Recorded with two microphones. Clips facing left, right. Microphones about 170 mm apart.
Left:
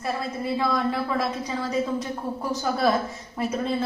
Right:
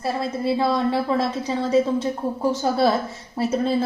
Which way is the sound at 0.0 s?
30° right (ahead or behind).